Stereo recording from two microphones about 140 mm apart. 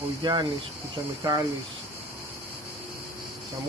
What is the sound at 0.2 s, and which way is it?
Speech, 35° right (ahead or behind).